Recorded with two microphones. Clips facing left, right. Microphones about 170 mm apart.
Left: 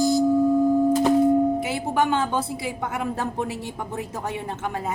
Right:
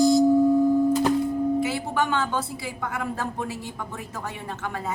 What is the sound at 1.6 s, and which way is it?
A woman's voice, 20° left (ahead or behind).